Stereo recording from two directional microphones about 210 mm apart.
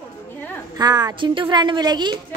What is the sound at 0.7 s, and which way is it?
A woman's voice, 20° right (ahead or behind).